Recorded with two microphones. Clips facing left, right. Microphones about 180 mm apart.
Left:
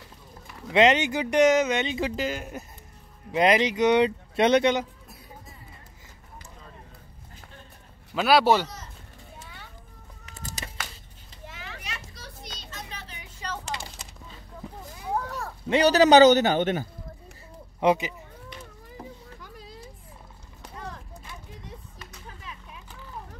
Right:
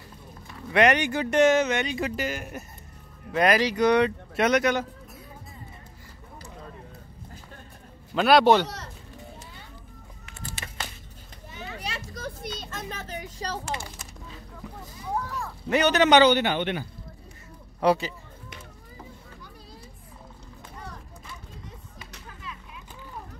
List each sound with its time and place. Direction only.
0.7 s speech: 20° left (ahead or behind)
8.1 s a man's voice: 5° left (ahead or behind)
8.6 s a sound: 70° right (ahead or behind)
9.4 s children playing: 70° left (ahead or behind)
10.2 s music: 40° left (ahead or behind)
11.8 s children playing: 35° right (ahead or behind)
12.2 s children playing: 55° right (ahead or behind)
15.7 s a man's voice: 35° left (ahead or behind)
17.7 s speech: 15° left (ahead or behind)